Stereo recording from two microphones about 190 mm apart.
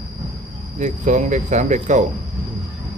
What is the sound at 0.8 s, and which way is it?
Speech, 40° right (ahead or behind).